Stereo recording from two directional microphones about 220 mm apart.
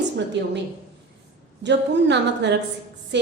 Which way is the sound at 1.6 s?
55° right (ahead or behind).